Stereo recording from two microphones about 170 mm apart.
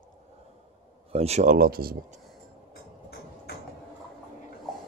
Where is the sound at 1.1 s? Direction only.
40° right (ahead or behind); by 2.0 s 60° right (ahead or behind).